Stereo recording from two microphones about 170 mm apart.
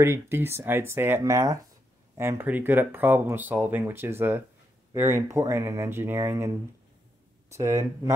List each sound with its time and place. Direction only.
0.0 s speech: 15° right (ahead or behind)
7.5 s speech: 15° right (ahead or behind)